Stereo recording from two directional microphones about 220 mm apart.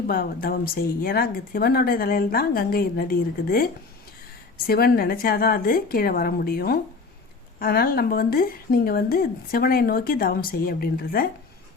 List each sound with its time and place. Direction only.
0.1 s speech: 40° left (ahead or behind)